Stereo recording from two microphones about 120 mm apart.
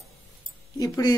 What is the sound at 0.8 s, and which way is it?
Speech, 35° left (ahead or behind).